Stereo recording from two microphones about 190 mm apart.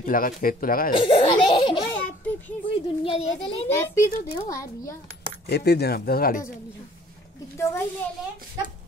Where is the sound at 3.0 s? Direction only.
30° left (ahead or behind).